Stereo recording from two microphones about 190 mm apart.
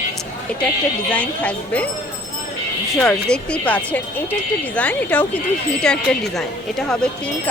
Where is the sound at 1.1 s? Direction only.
5° left (ahead or behind).